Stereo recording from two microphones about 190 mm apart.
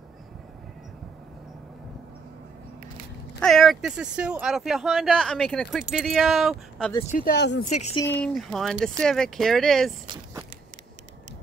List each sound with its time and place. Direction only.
3.3 s speech: centre (ahead or behind)
7.0 s speech: 40° left (ahead or behind); by 7.6 s 65° left (ahead or behind)
7.6 s speech: 40° left (ahead or behind)
8.1 s speech: 5° left (ahead or behind)